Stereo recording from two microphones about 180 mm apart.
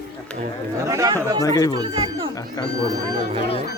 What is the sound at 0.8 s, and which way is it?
Speech, 15° right (ahead or behind).